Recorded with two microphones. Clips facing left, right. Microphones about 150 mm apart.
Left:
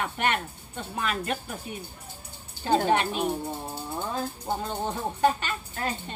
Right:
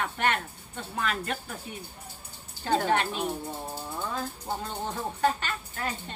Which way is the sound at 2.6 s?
20° left (ahead or behind).